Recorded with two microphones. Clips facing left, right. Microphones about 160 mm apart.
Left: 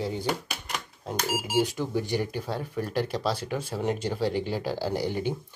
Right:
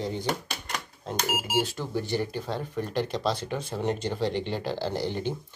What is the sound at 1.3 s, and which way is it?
Speech, 20° right (ahead or behind).